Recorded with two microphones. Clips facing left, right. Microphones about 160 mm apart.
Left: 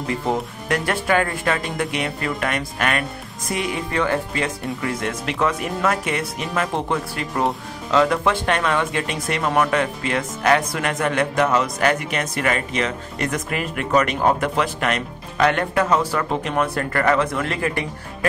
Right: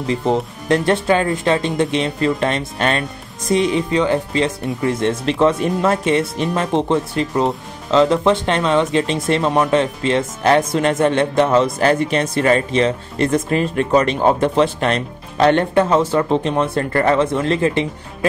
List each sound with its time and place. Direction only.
0.1 s speech: 25° right (ahead or behind)